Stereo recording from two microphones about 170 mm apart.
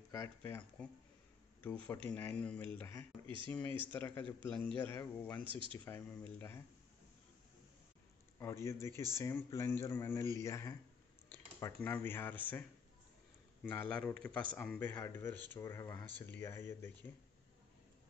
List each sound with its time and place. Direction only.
0.1 s a man's voice: 15° left (ahead or behind)
5.4 s speech: 30° right (ahead or behind)
5.9 s a man's voice: 15° left (ahead or behind)
8.4 s a man's voice: 15° left (ahead or behind)
11.2 s a sound: 10° left (ahead or behind)
11.8 s a man's voice: 15° left (ahead or behind)
13.7 s a man's voice: 10° left (ahead or behind)